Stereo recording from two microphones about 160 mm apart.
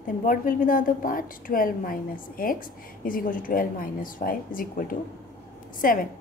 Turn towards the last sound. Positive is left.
turn(degrees=60)  # may be behind; listen again after turning